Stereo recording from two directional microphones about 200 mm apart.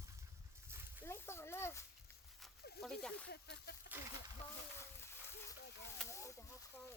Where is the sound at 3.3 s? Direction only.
55° left (ahead or behind).